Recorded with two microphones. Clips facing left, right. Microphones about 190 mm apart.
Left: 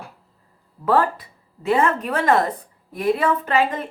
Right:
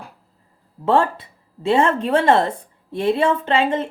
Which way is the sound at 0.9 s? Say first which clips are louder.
Right 1 dB; 25° right (ahead or behind).